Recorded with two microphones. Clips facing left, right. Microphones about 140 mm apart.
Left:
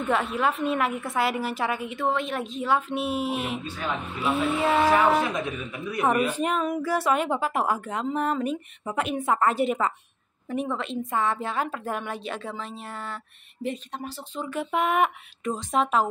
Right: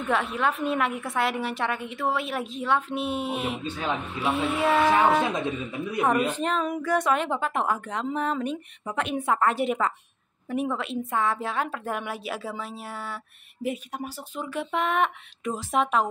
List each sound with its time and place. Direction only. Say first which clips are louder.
0.1 s a woman's voice: even; centre (ahead or behind)
3.6 s speech: right 2 dB; 25° right (ahead or behind)
4.2 s a woman's voice: left 1 dB; centre (ahead or behind)
5.2 s speech: right 1 dB; 25° right (ahead or behind)
6.3 s a woman's voice: left 1 dB; 10° left (ahead or behind); by 14.5 s 10° right (ahead or behind)
14.5 s a woman's voice: left 2 dB; centre (ahead or behind)